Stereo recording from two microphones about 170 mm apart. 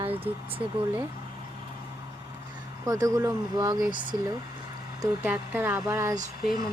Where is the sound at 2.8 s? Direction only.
20° right (ahead or behind).